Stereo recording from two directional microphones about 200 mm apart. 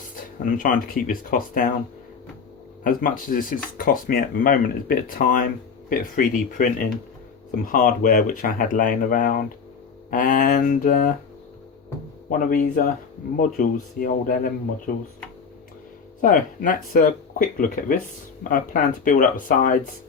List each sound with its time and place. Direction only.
0.4 s speech: 40° left (ahead or behind)
2.8 s speech: 40° left (ahead or behind)
12.3 s speech: 40° left (ahead or behind)
16.2 s speech: 45° left (ahead or behind)